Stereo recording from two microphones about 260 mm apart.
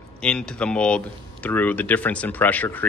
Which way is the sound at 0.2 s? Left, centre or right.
Centre.